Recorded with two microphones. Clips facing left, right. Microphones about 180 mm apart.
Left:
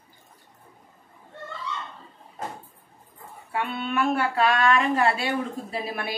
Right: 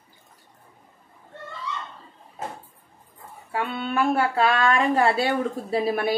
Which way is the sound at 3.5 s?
30° right (ahead or behind).